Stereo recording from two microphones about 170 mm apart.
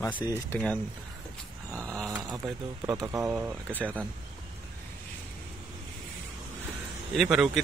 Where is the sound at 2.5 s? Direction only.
20° right (ahead or behind).